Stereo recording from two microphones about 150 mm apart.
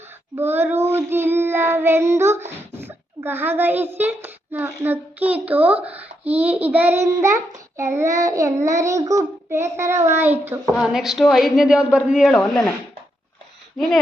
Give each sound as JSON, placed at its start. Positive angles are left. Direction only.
{"t": 0.3, "sound": "child singing", "side_deg": -15}
{"t": 2.7, "sound": "a child's voice", "side_deg": -15}
{"t": 6.4, "sound": "child singing", "side_deg": -10}
{"t": 8.6, "sound": "a child's voice", "side_deg": -20}
{"t": 10.4, "sound": "child singing", "side_deg": -15}
{"t": 10.8, "sound": "a woman's voice", "side_deg": -5}